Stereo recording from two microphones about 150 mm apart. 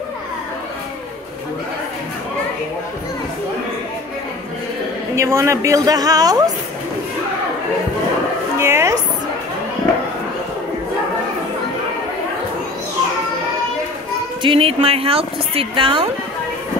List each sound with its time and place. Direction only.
5.1 s a man's voice: 20° right (ahead or behind)
8.5 s a sound: 20° right (ahead or behind)
14.4 s a woman's voice: 35° right (ahead or behind)